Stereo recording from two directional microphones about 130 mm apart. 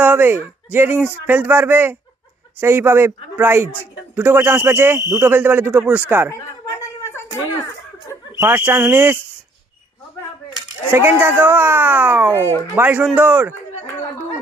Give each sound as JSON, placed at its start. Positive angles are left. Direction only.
{"t": 0.0, "sound": "speech", "side_deg": -15}
{"t": 6.3, "sound": "a sound", "side_deg": 25}
{"t": 8.4, "sound": "speech", "side_deg": -15}
{"t": 10.9, "sound": "speech", "side_deg": -15}